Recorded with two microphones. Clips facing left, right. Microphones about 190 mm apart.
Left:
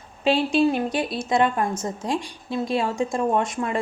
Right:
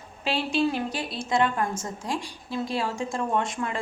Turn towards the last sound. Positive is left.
turn(degrees=20)  # may be behind; listen again after turning